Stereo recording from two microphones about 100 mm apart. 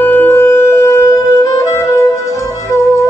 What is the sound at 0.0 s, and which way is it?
Music, 20° left (ahead or behind).